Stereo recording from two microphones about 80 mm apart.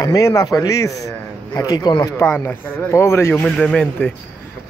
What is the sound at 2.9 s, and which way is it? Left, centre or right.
Speech, left.